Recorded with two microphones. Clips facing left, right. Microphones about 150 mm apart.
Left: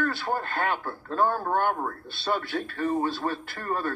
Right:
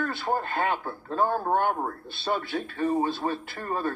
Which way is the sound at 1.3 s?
30° right (ahead or behind).